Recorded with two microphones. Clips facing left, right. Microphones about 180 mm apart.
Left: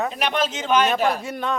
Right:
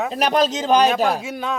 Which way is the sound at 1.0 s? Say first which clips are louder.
Right 1 dB; centre (ahead or behind).